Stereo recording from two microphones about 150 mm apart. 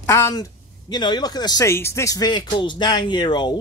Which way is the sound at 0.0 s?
15° left (ahead or behind).